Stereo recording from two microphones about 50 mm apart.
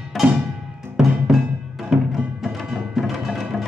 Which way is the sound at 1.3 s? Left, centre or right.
Centre.